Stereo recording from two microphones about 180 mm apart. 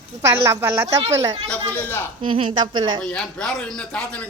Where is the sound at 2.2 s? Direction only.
30° right (ahead or behind).